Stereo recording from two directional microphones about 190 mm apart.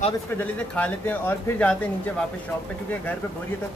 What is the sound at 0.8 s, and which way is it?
Speech, 10° left (ahead or behind).